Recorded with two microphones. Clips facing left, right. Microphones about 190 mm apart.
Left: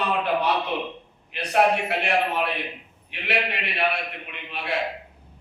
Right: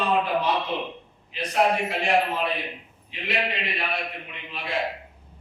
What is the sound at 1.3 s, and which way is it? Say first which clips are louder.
A man's voice: left 2 dB; 65° left (ahead or behind).